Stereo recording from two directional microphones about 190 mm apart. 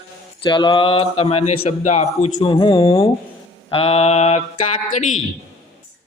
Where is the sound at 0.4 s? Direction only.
25° left (ahead or behind).